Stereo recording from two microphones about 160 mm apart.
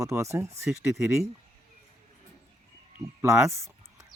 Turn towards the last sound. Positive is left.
turn(degrees=-20)  # may be behind; listen again after turning